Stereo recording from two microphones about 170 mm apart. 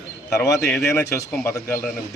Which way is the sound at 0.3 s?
20° left (ahead or behind).